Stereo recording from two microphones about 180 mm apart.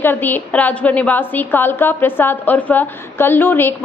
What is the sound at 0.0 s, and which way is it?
A woman's voice, 10° left (ahead or behind).